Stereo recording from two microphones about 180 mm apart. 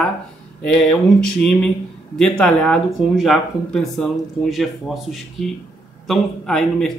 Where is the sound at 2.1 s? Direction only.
5° left (ahead or behind).